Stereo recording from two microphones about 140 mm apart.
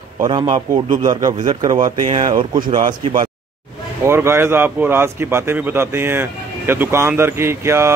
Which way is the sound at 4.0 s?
20° right (ahead or behind).